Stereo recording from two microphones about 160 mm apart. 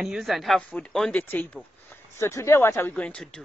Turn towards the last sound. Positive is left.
turn(degrees=5)  # may be behind; listen again after turning